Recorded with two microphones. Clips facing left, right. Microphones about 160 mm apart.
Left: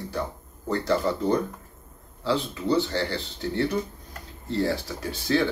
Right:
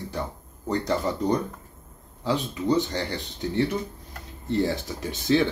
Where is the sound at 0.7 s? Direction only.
20° right (ahead or behind).